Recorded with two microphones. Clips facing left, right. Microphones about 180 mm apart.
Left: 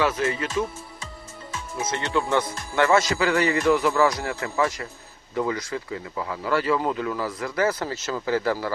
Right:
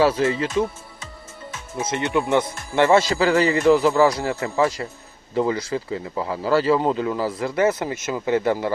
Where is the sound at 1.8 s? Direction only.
20° right (ahead or behind).